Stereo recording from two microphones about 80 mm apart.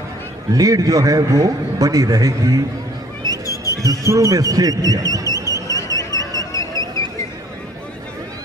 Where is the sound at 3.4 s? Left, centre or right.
Left.